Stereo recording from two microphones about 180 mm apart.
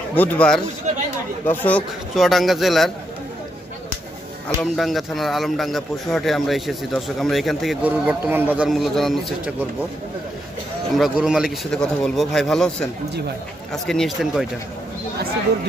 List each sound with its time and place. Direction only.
0.1 s a man's voice: 10° left (ahead or behind)
0.9 s speech: 40° right (ahead or behind)
1.5 s a man's voice: 10° left (ahead or behind)
4.6 s a man's voice: centre (ahead or behind)
11.0 s a man's voice: 5° right (ahead or behind)